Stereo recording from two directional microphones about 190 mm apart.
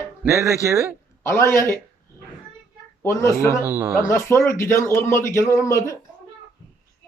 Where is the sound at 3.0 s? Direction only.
15° left (ahead or behind).